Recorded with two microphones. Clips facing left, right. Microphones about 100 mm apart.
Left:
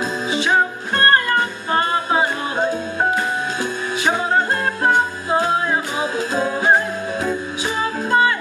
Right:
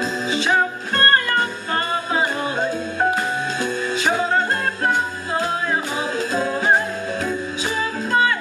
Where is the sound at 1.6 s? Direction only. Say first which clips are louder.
Left 4 dB; 25° left (ahead or behind).